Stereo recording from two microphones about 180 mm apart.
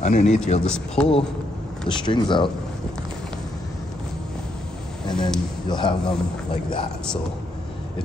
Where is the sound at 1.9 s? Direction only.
25° left (ahead or behind).